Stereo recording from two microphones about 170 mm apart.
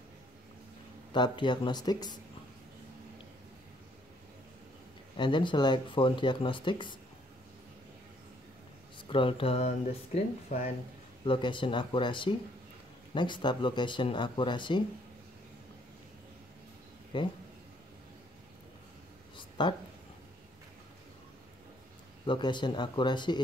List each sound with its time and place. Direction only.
1.1 s speech: 25° left (ahead or behind)
5.1 s speech: 30° left (ahead or behind)
9.1 s speech: 30° left (ahead or behind)
11.2 s speech: 30° left (ahead or behind)
17.1 s speech: 25° left (ahead or behind)
19.3 s a sound: 25° left (ahead or behind)
22.2 s speech: 25° left (ahead or behind)